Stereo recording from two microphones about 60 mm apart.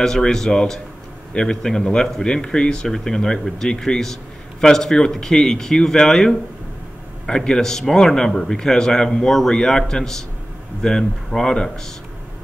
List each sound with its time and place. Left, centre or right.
0.0 s speech: centre